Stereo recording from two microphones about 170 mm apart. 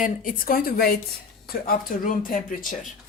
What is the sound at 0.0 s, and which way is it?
A woman's voice, 55° left (ahead or behind).